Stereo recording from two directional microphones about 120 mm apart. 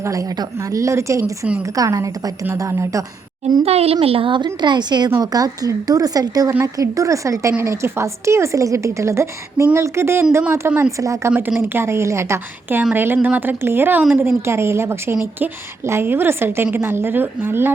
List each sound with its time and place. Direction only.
0.0 s a woman's voice: 25° right (ahead or behind)
1.2 s speech: 10° right (ahead or behind)
1.7 s a woman's voice: 30° right (ahead or behind)
3.6 s a woman's voice: 55° right (ahead or behind); by 11.3 s 25° right (ahead or behind)
11.3 s a woman's voice: 15° right (ahead or behind)